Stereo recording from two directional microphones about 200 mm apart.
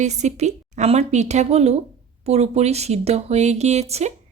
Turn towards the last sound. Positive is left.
turn(degrees=-35)  # may be behind; listen again after turning